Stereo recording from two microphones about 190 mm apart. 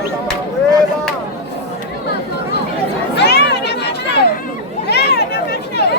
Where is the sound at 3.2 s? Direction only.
60° left (ahead or behind).